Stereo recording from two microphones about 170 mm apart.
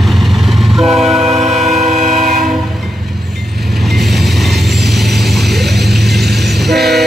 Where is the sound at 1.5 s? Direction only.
Centre (ahead or behind).